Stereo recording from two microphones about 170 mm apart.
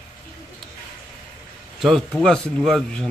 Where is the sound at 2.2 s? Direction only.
5° left (ahead or behind).